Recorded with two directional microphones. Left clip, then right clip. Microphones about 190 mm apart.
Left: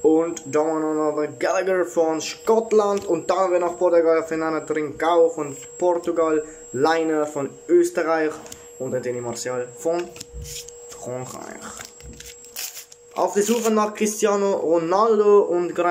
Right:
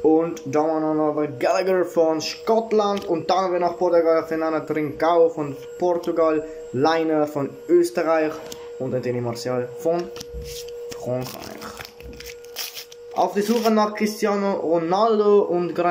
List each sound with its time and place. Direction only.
0.0 s speech: centre (ahead or behind)
11.1 s speech: 5° right (ahead or behind)
13.2 s speech: 5° left (ahead or behind)